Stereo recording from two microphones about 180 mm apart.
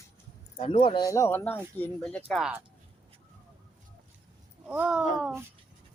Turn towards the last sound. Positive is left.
turn(degrees=0)  # may be behind; listen again after turning